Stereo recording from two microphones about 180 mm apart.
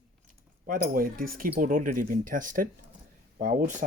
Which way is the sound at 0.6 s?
55° right (ahead or behind).